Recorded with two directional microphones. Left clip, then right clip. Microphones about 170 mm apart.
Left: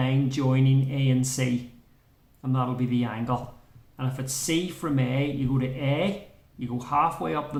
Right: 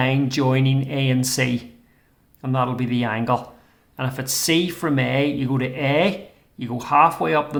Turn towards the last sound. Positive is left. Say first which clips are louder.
# right 8 dB
turn(degrees=-35)  # may be behind; listen again after turning